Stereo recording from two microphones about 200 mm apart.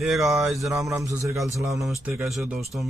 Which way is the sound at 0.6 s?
15° right (ahead or behind).